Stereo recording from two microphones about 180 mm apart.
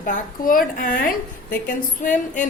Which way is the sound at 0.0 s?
50° left (ahead or behind).